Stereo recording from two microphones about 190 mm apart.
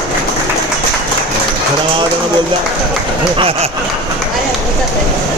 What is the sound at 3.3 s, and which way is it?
Speech, 30° right (ahead or behind).